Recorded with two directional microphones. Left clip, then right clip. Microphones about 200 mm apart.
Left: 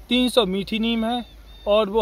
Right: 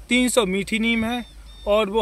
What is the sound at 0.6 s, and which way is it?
Speech, 30° right (ahead or behind).